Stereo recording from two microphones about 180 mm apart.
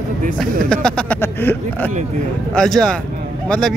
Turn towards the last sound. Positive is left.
turn(degrees=0)  # may be behind; listen again after turning